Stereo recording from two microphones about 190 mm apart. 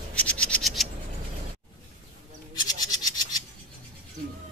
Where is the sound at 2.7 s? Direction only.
20° left (ahead or behind).